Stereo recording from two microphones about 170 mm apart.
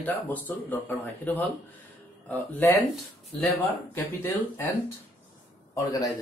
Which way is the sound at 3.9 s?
15° left (ahead or behind).